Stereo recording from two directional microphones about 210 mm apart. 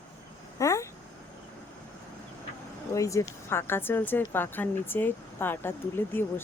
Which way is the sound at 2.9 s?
15° left (ahead or behind).